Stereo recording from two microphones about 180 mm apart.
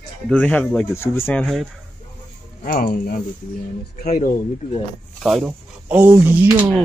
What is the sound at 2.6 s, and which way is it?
Speech, 55° left (ahead or behind).